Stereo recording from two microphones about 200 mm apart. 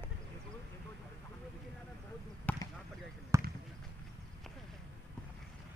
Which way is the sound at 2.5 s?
10° left (ahead or behind).